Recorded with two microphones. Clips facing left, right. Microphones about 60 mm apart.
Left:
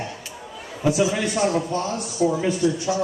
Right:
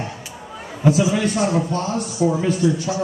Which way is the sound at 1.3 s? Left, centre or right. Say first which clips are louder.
Right 2 dB; right.